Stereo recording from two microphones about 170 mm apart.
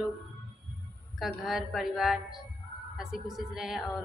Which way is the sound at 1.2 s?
Centre (ahead or behind).